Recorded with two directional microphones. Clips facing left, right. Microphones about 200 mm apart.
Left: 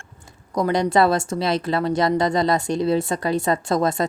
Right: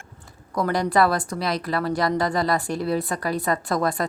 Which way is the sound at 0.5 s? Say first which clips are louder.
Left 3 dB; 20° left (ahead or behind).